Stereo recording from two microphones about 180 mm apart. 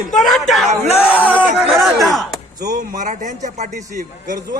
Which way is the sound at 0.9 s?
35° left (ahead or behind).